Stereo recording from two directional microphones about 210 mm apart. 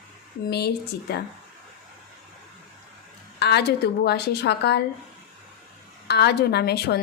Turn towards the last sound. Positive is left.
turn(degrees=50)  # may be behind; listen again after turning